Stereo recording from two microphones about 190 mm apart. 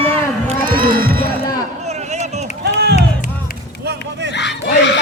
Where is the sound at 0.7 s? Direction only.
50° right (ahead or behind).